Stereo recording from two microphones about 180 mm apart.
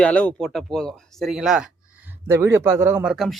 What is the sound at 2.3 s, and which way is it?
Speech, 15° right (ahead or behind).